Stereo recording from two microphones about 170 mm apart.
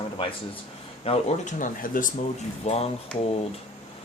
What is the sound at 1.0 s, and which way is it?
Speech, 35° left (ahead or behind).